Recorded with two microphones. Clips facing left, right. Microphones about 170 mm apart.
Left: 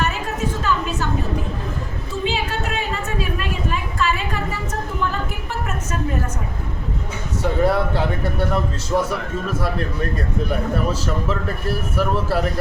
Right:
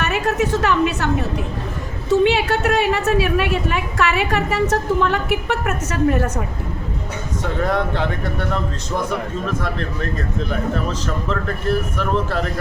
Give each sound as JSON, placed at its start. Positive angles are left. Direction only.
{"t": 0.0, "sound": "a woman's voice", "side_deg": -70}
{"t": 7.6, "sound": "a man's voice", "side_deg": 10}